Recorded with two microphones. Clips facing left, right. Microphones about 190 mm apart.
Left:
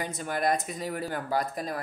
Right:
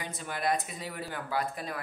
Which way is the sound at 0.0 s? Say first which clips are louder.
Left 5 dB; 45° left (ahead or behind).